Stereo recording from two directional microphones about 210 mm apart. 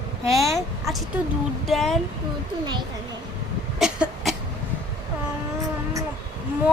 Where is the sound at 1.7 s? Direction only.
Centre (ahead or behind).